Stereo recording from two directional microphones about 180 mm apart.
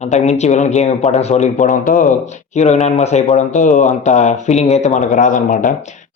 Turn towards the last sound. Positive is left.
turn(degrees=45)  # may be behind; listen again after turning